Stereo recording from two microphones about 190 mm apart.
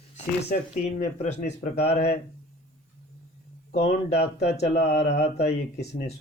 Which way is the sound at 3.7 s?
60° left (ahead or behind).